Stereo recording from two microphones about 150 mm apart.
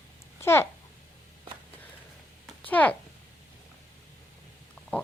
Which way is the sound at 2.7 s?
10° left (ahead or behind).